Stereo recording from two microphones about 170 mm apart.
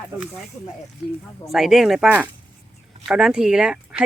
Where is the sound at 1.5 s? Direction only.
Centre (ahead or behind).